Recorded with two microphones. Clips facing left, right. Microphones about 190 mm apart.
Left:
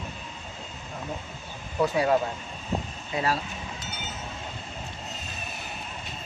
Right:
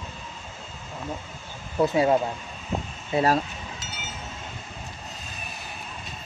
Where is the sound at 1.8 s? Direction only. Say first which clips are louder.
Right 2 dB; 25° right (ahead or behind).